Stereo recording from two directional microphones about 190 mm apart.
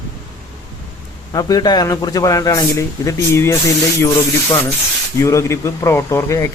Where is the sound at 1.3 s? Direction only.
20° left (ahead or behind).